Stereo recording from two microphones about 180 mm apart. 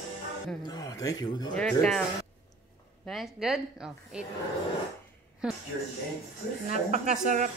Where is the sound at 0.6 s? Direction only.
20° left (ahead or behind).